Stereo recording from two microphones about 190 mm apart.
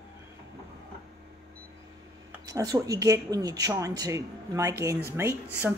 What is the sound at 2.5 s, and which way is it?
A woman's voice, 20° right (ahead or behind).